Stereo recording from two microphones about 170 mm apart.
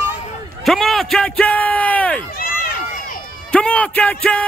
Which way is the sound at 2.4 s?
60° left (ahead or behind).